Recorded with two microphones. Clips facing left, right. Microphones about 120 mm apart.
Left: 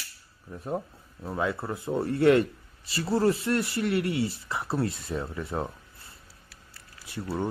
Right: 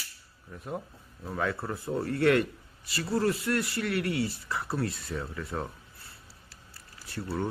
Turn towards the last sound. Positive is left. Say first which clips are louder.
# left 2 dB
turn(degrees=15)  # may be behind; listen again after turning